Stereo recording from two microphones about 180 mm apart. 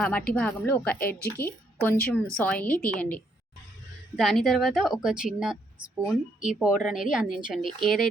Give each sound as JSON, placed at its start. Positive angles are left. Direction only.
{"t": 0.0, "sound": "a woman's voice", "side_deg": 5}
{"t": 0.9, "sound": "a woman's voice", "side_deg": 55}
{"t": 1.4, "sound": "a woman's voice", "side_deg": 10}